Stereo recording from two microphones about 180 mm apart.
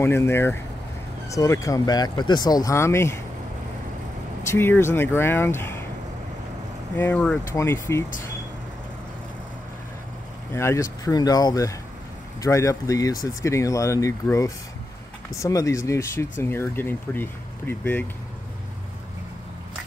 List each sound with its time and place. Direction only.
0.0 s speech: 15° left (ahead or behind)
4.4 s speech: 15° left (ahead or behind)
7.0 s speech: 10° left (ahead or behind)
10.5 s speech: 15° left (ahead or behind)